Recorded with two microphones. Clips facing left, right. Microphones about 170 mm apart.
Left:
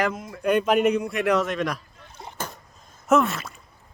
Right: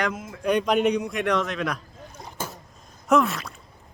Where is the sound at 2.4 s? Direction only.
10° right (ahead or behind).